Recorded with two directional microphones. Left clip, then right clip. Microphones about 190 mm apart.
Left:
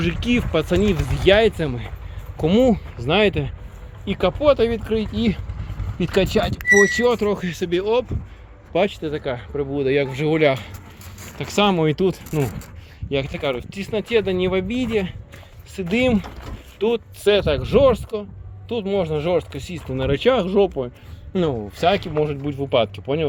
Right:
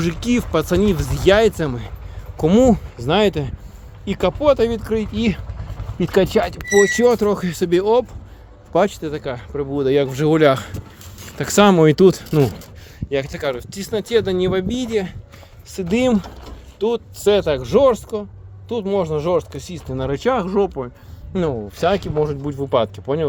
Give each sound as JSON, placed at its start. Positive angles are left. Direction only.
{"t": 0.0, "sound": "speech", "side_deg": -15}
{"t": 8.7, "sound": "speech", "side_deg": -15}
{"t": 9.7, "sound": "speech", "side_deg": -25}
{"t": 11.3, "sound": "speech", "side_deg": -55}
{"t": 13.4, "sound": "speech", "side_deg": -30}
{"t": 21.8, "sound": "speech", "side_deg": -20}